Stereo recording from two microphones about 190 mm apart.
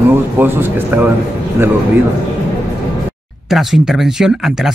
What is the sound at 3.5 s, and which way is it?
Speech, centre (ahead or behind).